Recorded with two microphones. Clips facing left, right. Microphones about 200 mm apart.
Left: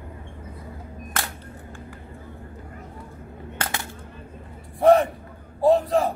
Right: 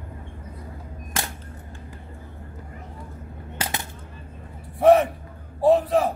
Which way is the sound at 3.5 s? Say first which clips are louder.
Even; 10° right (ahead or behind).